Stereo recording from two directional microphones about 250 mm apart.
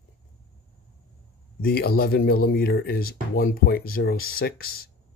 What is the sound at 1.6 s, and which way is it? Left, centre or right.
Speech, left.